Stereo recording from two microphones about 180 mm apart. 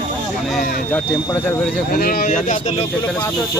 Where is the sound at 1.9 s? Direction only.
55° left (ahead or behind).